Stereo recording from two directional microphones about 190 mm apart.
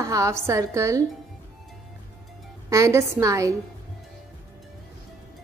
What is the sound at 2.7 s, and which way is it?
Speech, 15° right (ahead or behind).